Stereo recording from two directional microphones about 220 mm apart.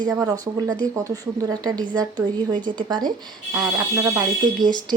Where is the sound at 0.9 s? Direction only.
15° right (ahead or behind).